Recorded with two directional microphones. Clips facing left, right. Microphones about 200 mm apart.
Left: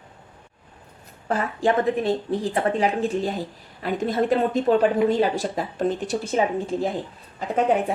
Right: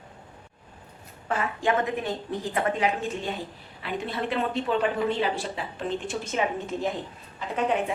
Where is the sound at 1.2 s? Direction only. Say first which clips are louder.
Left 4 dB; 35° left (ahead or behind).